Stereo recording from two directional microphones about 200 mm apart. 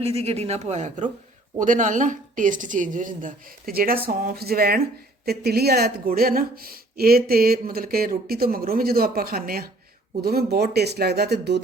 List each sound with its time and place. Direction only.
0.0 s a woman's voice: 30° right (ahead or behind); by 11.6 s 55° right (ahead or behind)